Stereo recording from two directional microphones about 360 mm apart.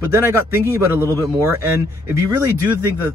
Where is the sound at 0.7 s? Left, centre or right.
Centre.